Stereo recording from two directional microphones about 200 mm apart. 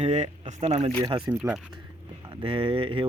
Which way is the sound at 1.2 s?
5° right (ahead or behind).